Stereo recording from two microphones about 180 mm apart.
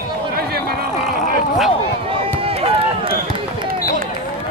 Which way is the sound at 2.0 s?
30° right (ahead or behind).